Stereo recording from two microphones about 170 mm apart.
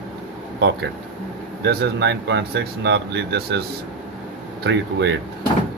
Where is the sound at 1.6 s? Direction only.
85° right.